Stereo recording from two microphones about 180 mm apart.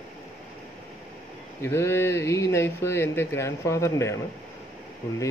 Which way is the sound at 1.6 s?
15° left (ahead or behind).